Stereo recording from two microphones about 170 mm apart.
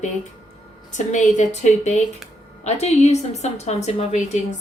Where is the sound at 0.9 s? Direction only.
45° left (ahead or behind).